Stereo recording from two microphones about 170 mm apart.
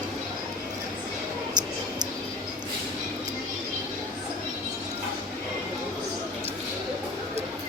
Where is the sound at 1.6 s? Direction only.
45° right (ahead or behind).